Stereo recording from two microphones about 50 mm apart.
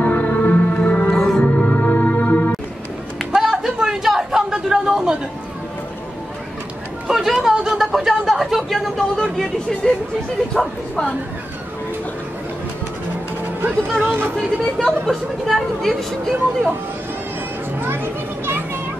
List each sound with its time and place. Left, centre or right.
0.0 s music: left
1.1 s music: centre
1.4 s music: left
3.3 s a sound: centre
7.1 s a sound: centre
7.4 s speech: centre
14.3 s speech: centre
17.7 s children playing: right